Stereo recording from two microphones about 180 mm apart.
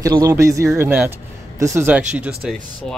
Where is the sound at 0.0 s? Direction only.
20° right (ahead or behind).